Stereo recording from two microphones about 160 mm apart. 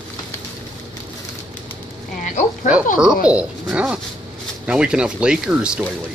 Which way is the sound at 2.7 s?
10° right (ahead or behind).